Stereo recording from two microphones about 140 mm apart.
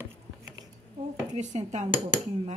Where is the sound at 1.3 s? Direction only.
55° right (ahead or behind).